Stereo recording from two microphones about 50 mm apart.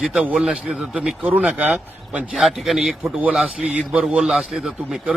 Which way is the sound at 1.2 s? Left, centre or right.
Right.